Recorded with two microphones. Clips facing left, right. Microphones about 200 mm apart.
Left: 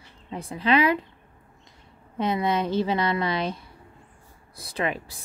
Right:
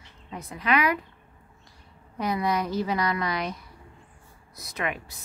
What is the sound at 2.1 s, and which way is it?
A woman's voice, 25° left (ahead or behind).